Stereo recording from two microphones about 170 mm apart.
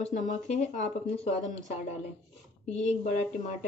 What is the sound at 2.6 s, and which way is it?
Speech, 40° left (ahead or behind).